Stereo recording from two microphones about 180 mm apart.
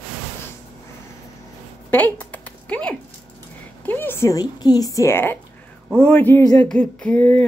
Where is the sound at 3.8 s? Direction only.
10° left (ahead or behind).